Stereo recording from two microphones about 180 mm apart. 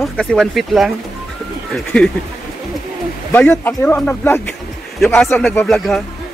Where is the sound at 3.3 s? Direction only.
10° left (ahead or behind).